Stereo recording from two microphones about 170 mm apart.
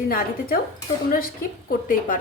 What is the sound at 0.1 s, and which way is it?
Speech, 60° left (ahead or behind).